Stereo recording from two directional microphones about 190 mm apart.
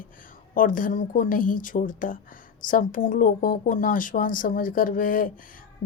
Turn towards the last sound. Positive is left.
turn(degrees=45)  # may be behind; listen again after turning